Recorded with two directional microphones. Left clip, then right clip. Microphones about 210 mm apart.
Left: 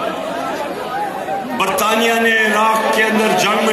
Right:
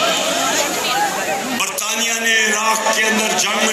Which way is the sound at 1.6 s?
50° left (ahead or behind).